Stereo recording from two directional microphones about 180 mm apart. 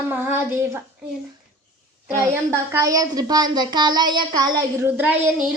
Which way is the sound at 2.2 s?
15° right (ahead or behind).